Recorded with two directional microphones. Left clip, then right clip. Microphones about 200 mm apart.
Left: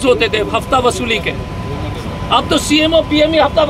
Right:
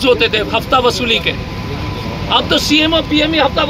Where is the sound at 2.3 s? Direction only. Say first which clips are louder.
Even; 10° left (ahead or behind).